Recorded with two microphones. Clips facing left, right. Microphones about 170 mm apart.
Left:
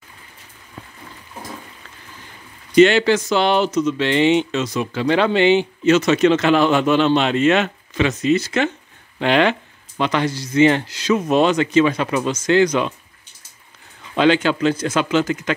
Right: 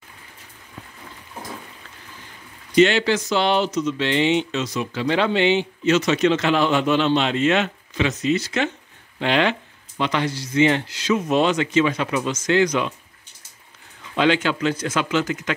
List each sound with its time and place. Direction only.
2.7 s speech: 55° left (ahead or behind); by 12.9 s 35° left (ahead or behind)
14.1 s speech: 35° left (ahead or behind)